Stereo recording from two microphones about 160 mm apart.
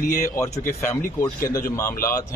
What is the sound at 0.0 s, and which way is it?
Speech, 20° left (ahead or behind).